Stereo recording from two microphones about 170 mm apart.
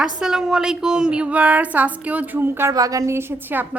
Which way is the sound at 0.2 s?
5° right (ahead or behind).